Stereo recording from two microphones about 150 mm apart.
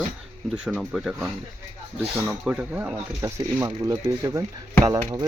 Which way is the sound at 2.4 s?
5° right (ahead or behind).